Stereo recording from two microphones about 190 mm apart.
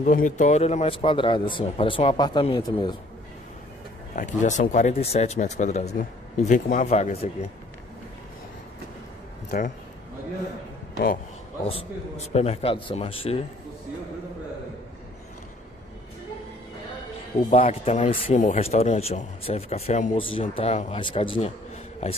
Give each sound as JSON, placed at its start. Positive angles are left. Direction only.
{"t": 0.0, "sound": "a man's voice", "side_deg": 45}
{"t": 4.1, "sound": "speech", "side_deg": 40}
{"t": 9.5, "sound": "speech", "side_deg": 50}
{"t": 11.6, "sound": "a man's voice", "side_deg": 30}
{"t": 17.5, "sound": "speech", "side_deg": 30}